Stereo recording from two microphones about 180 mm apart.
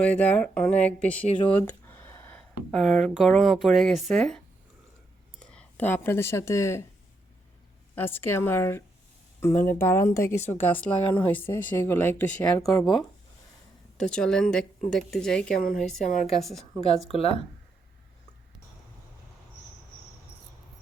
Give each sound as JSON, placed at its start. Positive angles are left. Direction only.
{"t": 0.0, "sound": "speech", "side_deg": 10}
{"t": 1.6, "sound": "a sound", "side_deg": 10}
{"t": 2.7, "sound": "a woman's voice", "side_deg": 0}
{"t": 5.4, "sound": "speech", "side_deg": 5}
{"t": 7.9, "sound": "speech", "side_deg": 10}
{"t": 12.6, "sound": "a woman's voice", "side_deg": 0}
{"t": 13.9, "sound": "a woman's voice", "side_deg": 5}
{"t": 17.1, "sound": "speech", "side_deg": 35}